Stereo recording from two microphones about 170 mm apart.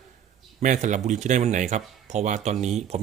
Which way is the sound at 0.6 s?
45° right (ahead or behind).